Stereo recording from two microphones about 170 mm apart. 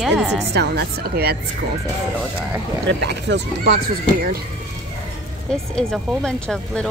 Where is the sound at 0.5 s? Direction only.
75° right (ahead or behind).